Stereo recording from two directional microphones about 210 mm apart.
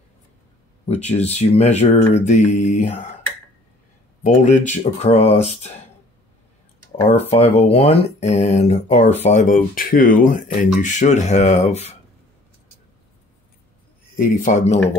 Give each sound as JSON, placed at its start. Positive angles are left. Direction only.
{"t": 0.8, "sound": "speech", "side_deg": 30}
{"t": 4.2, "sound": "speech", "side_deg": 35}
{"t": 7.1, "sound": "speech", "side_deg": 30}
{"t": 14.1, "sound": "speech", "side_deg": 40}